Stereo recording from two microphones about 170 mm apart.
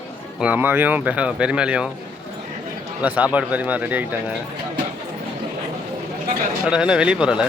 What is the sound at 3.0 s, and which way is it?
Speech, 10° right (ahead or behind).